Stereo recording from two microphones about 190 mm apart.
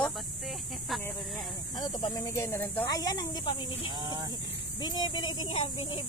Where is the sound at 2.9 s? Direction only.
20° left (ahead or behind).